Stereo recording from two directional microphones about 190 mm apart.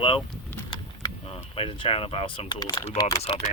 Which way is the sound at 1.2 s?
30° left (ahead or behind).